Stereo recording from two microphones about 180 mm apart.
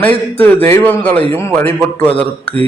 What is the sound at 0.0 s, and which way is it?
A man's voice, 10° left (ahead or behind).